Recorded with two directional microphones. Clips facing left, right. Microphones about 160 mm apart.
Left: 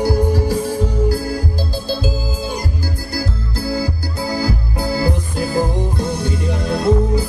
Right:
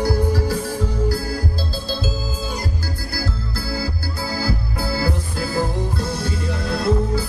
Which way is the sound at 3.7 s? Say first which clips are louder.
Left 5 dB; 15° left (ahead or behind).